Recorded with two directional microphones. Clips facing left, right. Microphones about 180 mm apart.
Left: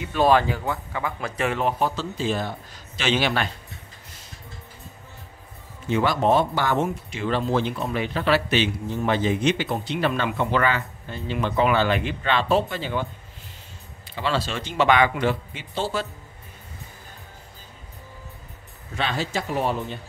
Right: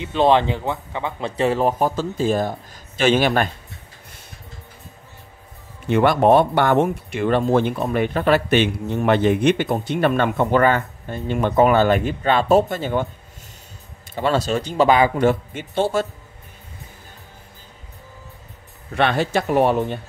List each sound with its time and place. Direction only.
0.0 s speech: 20° right (ahead or behind); by 3.4 s 50° right (ahead or behind)
5.9 s speech: 60° right (ahead or behind)
14.1 s speech: 45° right (ahead or behind)
18.9 s speech: 60° right (ahead or behind)